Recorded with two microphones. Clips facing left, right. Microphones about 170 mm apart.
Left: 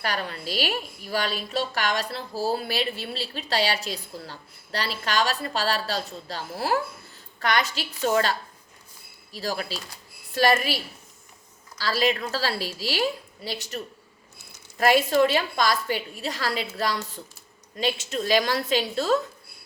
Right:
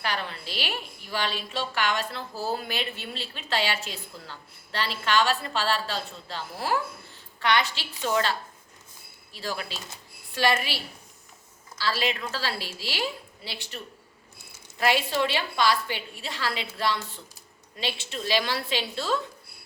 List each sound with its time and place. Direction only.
0.0 s a woman's voice: 40° left (ahead or behind)
11.8 s a woman's voice: 40° left (ahead or behind)
14.8 s a woman's voice: 45° left (ahead or behind)